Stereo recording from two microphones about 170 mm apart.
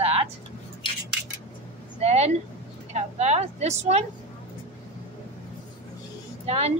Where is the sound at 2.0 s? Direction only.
40° right (ahead or behind).